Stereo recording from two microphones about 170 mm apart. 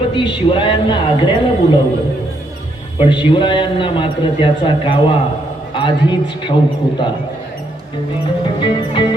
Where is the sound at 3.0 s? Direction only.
30° left (ahead or behind).